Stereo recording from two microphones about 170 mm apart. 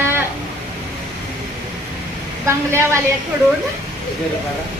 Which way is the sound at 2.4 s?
15° right (ahead or behind).